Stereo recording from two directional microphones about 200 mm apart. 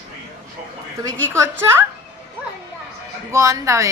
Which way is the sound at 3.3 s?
15° right (ahead or behind).